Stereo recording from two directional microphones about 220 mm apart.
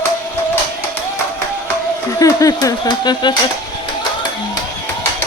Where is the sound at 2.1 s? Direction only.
15° left (ahead or behind).